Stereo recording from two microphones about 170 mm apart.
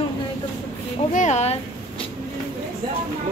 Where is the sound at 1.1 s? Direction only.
45° left (ahead or behind).